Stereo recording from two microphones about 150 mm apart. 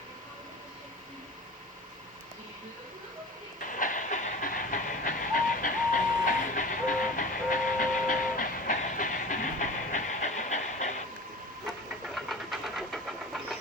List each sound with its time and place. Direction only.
3.6 s train: 60° left (ahead or behind)
11.6 s vehicle: centre (ahead or behind)